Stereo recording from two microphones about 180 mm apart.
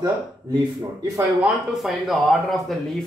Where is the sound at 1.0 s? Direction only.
20° right (ahead or behind).